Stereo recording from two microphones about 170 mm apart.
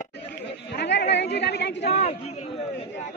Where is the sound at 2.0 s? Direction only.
40° left (ahead or behind).